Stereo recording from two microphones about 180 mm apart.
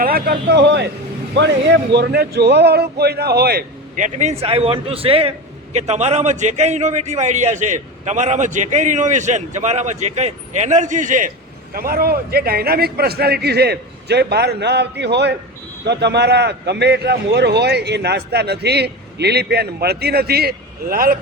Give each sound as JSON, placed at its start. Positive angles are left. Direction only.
{"t": 0.0, "sound": "a man's voice", "side_deg": -55}